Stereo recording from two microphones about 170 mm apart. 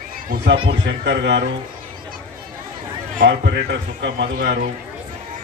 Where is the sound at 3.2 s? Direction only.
85° right; by 4.6 s 60° right (ahead or behind).